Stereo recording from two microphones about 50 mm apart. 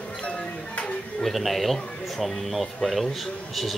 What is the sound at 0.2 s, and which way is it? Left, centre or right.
Music, left.